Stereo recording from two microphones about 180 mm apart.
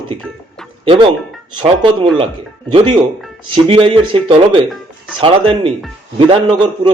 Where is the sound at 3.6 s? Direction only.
30° right (ahead or behind).